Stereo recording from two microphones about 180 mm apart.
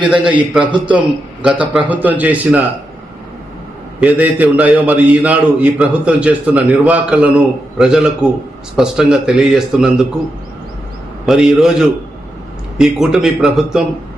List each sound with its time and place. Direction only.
0.0 s a man's voice: 5° right (ahead or behind)
0.7 s a man's voice: 25° right (ahead or behind)
1.4 s a man's voice: 5° right (ahead or behind)
4.0 s a man's voice: 10° right (ahead or behind)
11.3 s speech: 5° right (ahead or behind)